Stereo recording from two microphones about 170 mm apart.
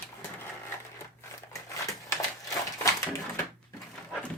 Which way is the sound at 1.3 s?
15° left (ahead or behind).